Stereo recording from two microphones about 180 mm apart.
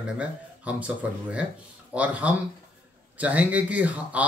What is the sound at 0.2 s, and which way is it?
Speech, 5° right (ahead or behind).